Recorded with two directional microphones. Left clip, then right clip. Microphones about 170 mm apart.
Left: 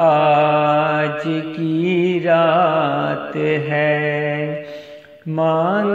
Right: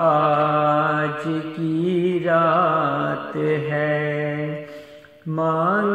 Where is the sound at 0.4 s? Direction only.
20° left (ahead or behind).